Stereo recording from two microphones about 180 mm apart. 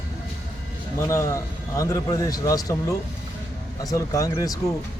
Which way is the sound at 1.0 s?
15° left (ahead or behind).